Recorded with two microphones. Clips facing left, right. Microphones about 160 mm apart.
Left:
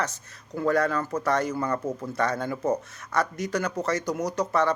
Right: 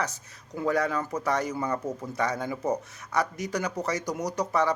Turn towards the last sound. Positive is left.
turn(degrees=-15)  # may be behind; listen again after turning